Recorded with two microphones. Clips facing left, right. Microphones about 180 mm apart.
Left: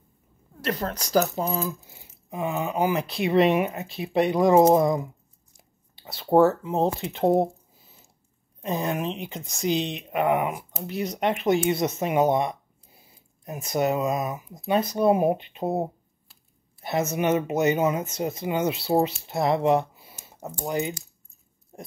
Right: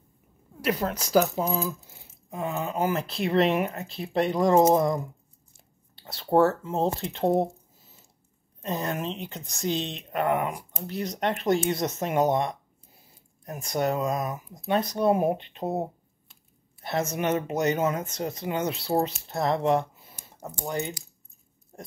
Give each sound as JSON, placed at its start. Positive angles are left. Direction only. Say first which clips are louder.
{"t": 0.6, "sound": "speech", "louder": "right 1 dB", "side_deg": -5}
{"t": 3.0, "sound": "speech", "louder": "left 3 dB", "side_deg": 15}
{"t": 4.2, "sound": "speech", "louder": "left 3 dB", "side_deg": 5}
{"t": 6.2, "sound": "speech", "louder": "left 3 dB", "side_deg": 15}
{"t": 7.0, "sound": "speech", "louder": "left 3 dB", "side_deg": 5}
{"t": 8.8, "sound": "speech", "louder": "left 3 dB", "side_deg": 10}
{"t": 16.8, "sound": "speech", "louder": "left 3 dB", "side_deg": 5}